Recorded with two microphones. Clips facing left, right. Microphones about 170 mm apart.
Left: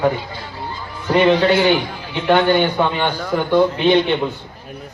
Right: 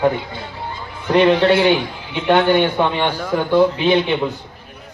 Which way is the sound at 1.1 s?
Centre (ahead or behind).